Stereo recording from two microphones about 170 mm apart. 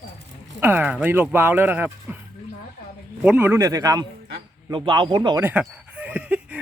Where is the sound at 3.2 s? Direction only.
10° right (ahead or behind); by 5.4 s 25° right (ahead or behind).